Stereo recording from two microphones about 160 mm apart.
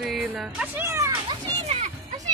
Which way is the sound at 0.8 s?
20° right (ahead or behind).